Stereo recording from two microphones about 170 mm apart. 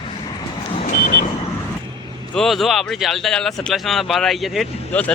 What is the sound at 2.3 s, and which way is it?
Speech, centre (ahead or behind).